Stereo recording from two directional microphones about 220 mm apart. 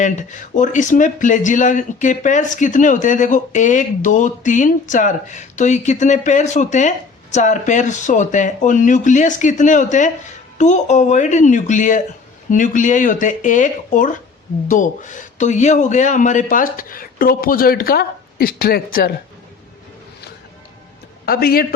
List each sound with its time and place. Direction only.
0.0 s speech: 35° left (ahead or behind)
21.2 s speech: 45° left (ahead or behind)